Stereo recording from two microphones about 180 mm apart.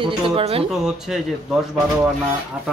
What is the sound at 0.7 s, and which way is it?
Speech, centre (ahead or behind).